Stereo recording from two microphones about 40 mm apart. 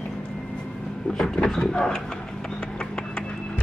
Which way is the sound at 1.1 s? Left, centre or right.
Centre.